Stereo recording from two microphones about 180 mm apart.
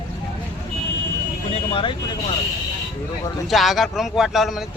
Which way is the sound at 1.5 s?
30° left (ahead or behind).